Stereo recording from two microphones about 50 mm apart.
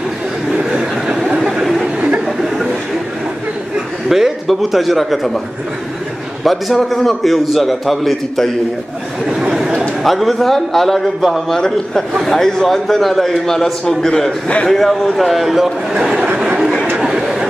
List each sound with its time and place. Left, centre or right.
0.5 s a sound: right
1.3 s chatter: centre
2.0 s a sound: right
2.2 s chuckle: centre
4.1 s a man's voice: centre
6.4 s a man's voice: centre
9.4 s chatter: centre
9.8 s a man's voice: centre
14.7 s a man's voice: centre
16.3 s a sound: centre
17.0 s chatter: centre